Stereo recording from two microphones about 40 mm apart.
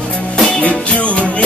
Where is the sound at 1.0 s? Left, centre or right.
Left.